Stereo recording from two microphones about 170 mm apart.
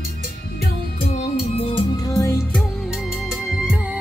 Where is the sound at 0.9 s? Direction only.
40° left (ahead or behind); by 2.6 s 15° left (ahead or behind).